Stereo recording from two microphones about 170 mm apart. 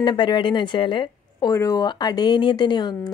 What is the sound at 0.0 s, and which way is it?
Speech, 30° left (ahead or behind).